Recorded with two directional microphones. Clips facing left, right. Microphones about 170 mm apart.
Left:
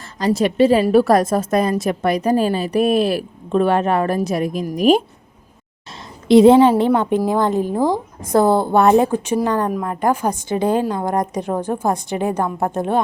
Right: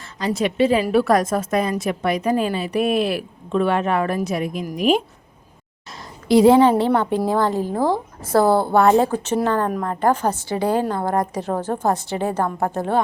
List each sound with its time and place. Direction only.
0.2 s a woman's voice: 40° left (ahead or behind)
6.2 s a woman's voice: 25° left (ahead or behind)